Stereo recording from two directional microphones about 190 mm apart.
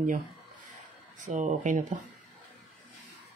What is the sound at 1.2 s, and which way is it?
Speech, 40° right (ahead or behind).